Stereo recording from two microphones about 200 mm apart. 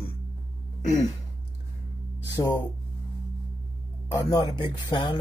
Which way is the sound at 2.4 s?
20° left (ahead or behind).